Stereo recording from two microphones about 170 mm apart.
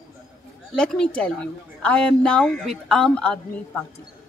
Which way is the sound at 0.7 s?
5° left (ahead or behind).